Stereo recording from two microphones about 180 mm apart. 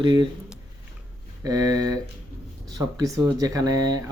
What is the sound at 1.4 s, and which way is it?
Speech, 20° right (ahead or behind).